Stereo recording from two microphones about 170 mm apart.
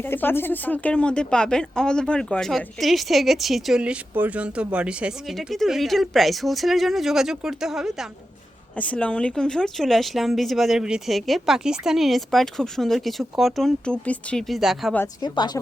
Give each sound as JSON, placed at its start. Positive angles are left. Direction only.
{"t": 0.0, "sound": "speech", "side_deg": 10}
{"t": 8.7, "sound": "speech", "side_deg": 10}
{"t": 14.9, "sound": "speech", "side_deg": 20}